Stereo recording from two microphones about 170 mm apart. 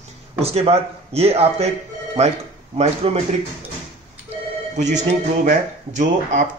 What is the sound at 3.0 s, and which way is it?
Speech, 35° right (ahead or behind).